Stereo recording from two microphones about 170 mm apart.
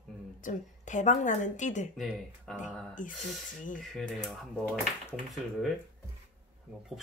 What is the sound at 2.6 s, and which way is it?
Speech, 50° left (ahead or behind).